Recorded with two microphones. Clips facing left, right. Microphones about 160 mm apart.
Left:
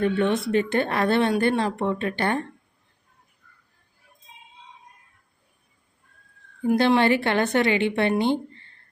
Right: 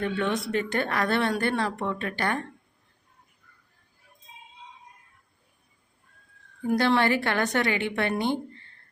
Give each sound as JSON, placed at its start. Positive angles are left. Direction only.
{"t": 0.0, "sound": "a woman's voice", "side_deg": 25}
{"t": 6.7, "sound": "a woman's voice", "side_deg": 20}